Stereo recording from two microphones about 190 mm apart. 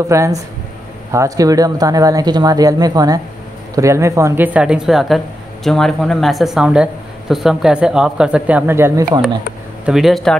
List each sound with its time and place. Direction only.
0.1 s speech: 15° right (ahead or behind)
9.8 s speech: centre (ahead or behind)